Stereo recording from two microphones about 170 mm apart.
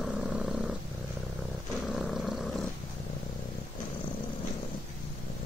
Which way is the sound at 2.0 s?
Centre (ahead or behind).